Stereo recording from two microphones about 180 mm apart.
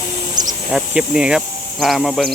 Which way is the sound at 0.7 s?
5° right (ahead or behind).